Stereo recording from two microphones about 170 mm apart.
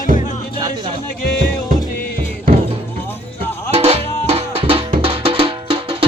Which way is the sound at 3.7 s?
35° right (ahead or behind).